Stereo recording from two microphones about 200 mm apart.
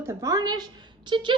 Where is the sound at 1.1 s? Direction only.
25° right (ahead or behind).